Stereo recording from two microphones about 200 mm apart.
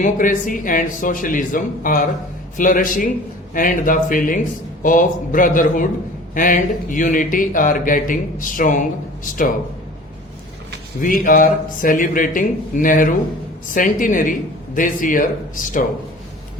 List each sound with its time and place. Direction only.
0.0 s a man's voice: 40° left (ahead or behind)
11.0 s a man's voice: 45° left (ahead or behind)